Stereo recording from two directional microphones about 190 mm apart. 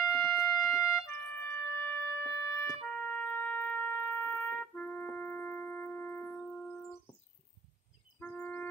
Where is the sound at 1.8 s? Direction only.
15° left (ahead or behind).